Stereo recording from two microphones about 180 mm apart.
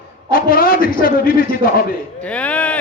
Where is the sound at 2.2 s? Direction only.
5° left (ahead or behind).